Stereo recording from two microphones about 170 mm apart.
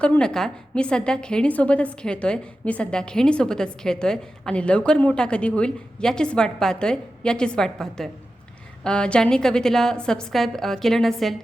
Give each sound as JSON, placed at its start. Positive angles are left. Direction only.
{"t": 0.0, "sound": "a woman's voice", "side_deg": 5}